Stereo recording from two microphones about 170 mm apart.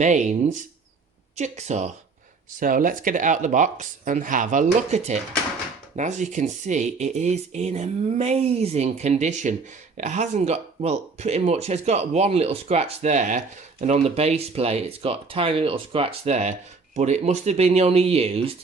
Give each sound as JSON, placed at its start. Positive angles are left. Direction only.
{"t": 0.0, "sound": "speech", "side_deg": -45}
{"t": 2.6, "sound": "speech", "side_deg": -55}